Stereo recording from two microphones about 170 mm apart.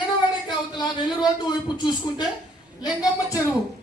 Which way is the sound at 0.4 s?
25° left (ahead or behind).